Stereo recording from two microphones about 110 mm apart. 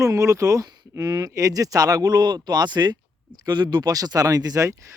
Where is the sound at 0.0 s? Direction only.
30° right (ahead or behind).